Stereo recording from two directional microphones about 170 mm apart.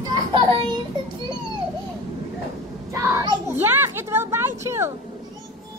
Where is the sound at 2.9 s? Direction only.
20° right (ahead or behind).